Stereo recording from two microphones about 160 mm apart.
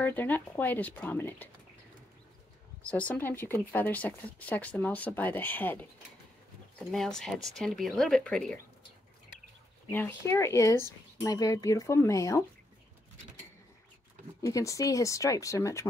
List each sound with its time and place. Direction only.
0.0 s speech: 10° left (ahead or behind)
2.8 s speech: 10° left (ahead or behind)
6.9 s speech: 5° left (ahead or behind)
9.8 s speech: 15° left (ahead or behind)
14.4 s speech: 20° left (ahead or behind)